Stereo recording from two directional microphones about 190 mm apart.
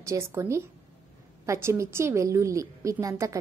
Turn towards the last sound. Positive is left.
turn(degrees=-15)  # may be behind; listen again after turning